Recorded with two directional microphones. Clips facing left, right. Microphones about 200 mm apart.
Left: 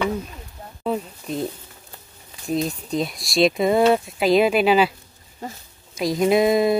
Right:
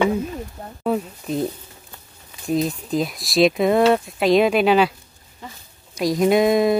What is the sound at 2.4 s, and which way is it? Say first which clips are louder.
Speech: right 2 dB; centre (ahead or behind).